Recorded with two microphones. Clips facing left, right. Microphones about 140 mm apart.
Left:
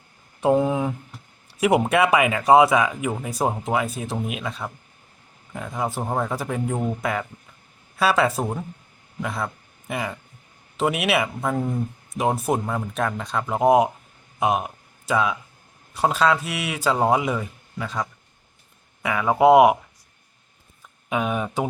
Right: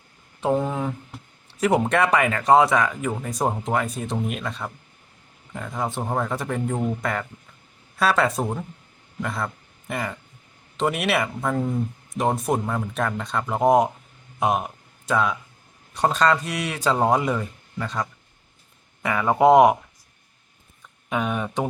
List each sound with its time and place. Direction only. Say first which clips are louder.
0.4 s speech: left 3 dB; 10° left (ahead or behind)
21.1 s speech: left 1 dB; 5° left (ahead or behind)